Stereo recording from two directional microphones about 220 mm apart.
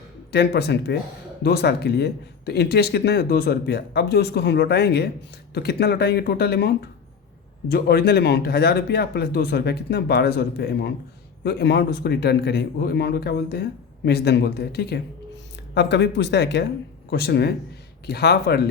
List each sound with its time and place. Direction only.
0.3 s speech: 50° left (ahead or behind)